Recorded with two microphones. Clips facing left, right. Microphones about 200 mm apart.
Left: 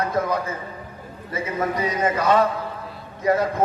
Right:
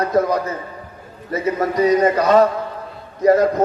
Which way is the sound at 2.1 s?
45° right (ahead or behind).